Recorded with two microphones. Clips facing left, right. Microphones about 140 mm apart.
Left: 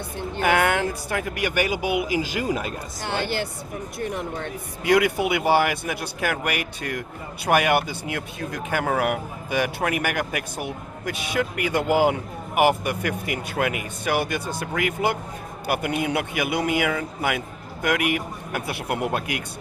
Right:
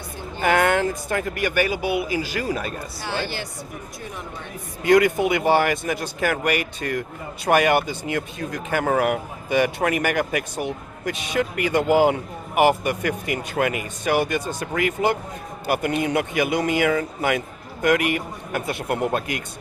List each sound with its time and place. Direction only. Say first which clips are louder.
0.4 s speech: right 2 dB; 5° left (ahead or behind)
3.1 s speech: left 2 dB; 55° left (ahead or behind)
4.8 s speech: right 3 dB; 10° left (ahead or behind)